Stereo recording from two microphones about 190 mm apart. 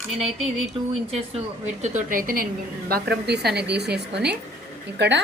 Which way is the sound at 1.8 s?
40° right (ahead or behind).